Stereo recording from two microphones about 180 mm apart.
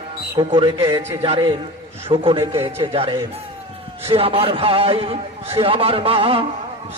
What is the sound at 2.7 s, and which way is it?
A man's voice, 30° right (ahead or behind).